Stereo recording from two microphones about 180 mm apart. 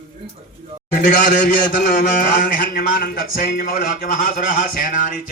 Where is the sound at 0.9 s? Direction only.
50° left (ahead or behind).